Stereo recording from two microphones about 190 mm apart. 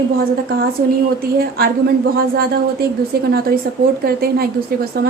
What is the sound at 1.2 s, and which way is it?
A woman's voice, 55° right (ahead or behind).